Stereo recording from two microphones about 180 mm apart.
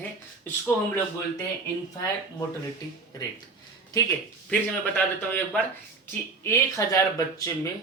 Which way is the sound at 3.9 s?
20° left (ahead or behind).